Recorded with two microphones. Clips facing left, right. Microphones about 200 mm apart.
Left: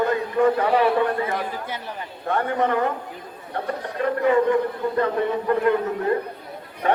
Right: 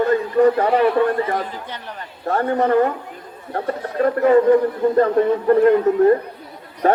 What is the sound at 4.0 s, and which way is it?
Speech, 40° right (ahead or behind).